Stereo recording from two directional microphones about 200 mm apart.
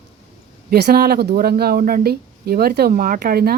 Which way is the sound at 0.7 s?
50° right (ahead or behind).